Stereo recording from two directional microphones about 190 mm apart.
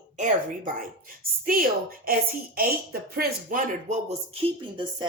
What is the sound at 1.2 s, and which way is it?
Speech, 50° right (ahead or behind).